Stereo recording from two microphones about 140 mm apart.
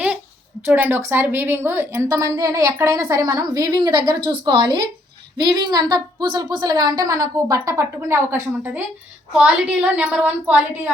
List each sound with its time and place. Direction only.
0.6 s a woman's voice: 15° right (ahead or behind)
9.4 s a woman's voice: 10° right (ahead or behind)